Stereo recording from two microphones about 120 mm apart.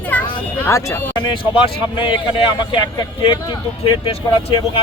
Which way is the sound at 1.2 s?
40° left (ahead or behind).